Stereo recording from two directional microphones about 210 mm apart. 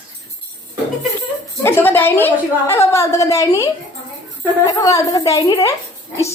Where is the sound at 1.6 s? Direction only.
10° left (ahead or behind).